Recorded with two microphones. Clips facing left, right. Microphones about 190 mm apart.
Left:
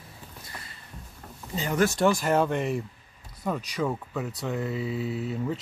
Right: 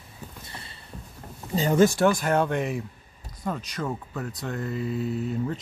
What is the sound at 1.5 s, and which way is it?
Speech, 30° right (ahead or behind).